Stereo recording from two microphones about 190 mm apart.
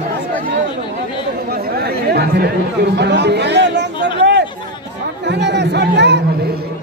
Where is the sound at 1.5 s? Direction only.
55° right (ahead or behind).